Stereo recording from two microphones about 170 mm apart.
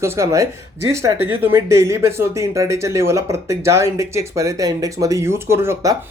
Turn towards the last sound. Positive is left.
turn(degrees=-20)  # may be behind; listen again after turning